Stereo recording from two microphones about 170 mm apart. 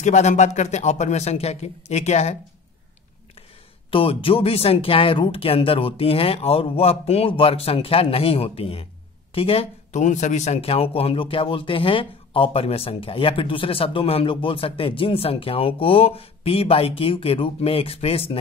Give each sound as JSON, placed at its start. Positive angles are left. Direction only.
{"t": 0.0, "sound": "speech", "side_deg": 40}
{"t": 3.9, "sound": "speech", "side_deg": 35}